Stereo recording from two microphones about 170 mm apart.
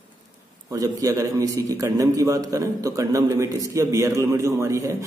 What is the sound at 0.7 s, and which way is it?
A man's voice, 20° right (ahead or behind).